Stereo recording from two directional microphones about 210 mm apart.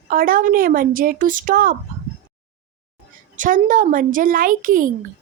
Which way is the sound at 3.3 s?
40° right (ahead or behind).